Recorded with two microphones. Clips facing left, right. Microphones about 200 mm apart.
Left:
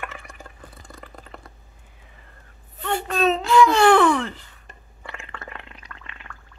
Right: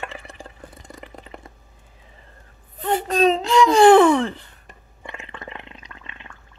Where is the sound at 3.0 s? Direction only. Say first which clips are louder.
Right 3 dB; 40° right (ahead or behind).